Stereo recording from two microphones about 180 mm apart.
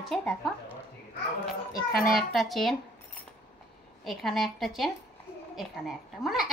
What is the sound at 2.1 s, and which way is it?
Speech, centre (ahead or behind).